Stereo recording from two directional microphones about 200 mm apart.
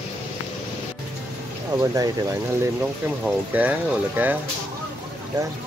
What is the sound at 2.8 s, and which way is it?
Speech, 5° right (ahead or behind).